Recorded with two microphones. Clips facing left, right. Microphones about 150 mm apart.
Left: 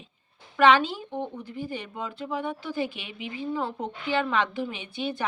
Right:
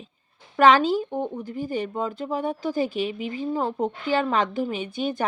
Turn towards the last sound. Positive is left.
turn(degrees=-45)  # may be behind; listen again after turning